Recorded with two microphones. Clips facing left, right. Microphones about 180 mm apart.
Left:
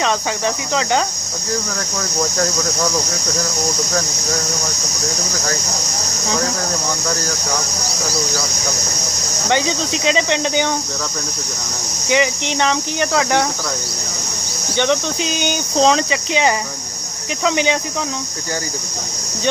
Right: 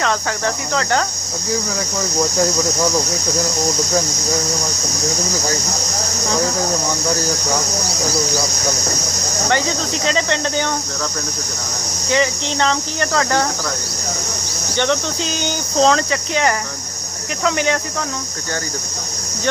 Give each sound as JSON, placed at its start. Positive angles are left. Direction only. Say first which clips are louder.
{"t": 0.0, "sound": "speech", "louder": "left 1 dB", "side_deg": 15}
{"t": 9.5, "sound": "speech", "louder": "left 2 dB", "side_deg": 20}
{"t": 12.1, "sound": "speech", "louder": "left 1 dB", "side_deg": 15}
{"t": 14.8, "sound": "speech", "louder": "left 1 dB", "side_deg": 15}